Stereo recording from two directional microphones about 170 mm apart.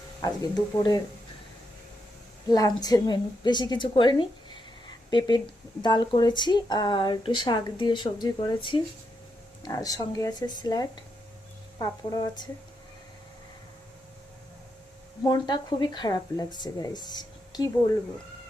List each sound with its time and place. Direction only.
0.2 s speech: 25° left (ahead or behind)
2.5 s speech: 25° left (ahead or behind)
15.2 s speech: 25° left (ahead or behind)
17.1 s a sound: 25° left (ahead or behind)